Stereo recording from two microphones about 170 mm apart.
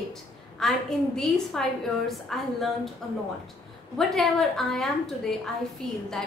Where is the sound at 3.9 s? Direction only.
Centre (ahead or behind).